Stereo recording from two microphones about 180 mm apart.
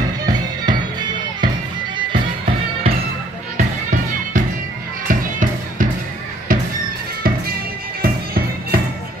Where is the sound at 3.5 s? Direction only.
45° right (ahead or behind).